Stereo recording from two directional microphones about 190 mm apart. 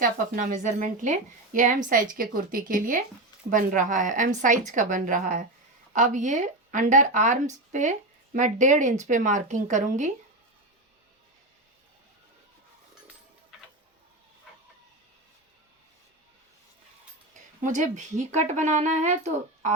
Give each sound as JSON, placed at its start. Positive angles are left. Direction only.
{"t": 0.0, "sound": "a woman's voice", "side_deg": -40}
{"t": 17.6, "sound": "speech", "side_deg": -40}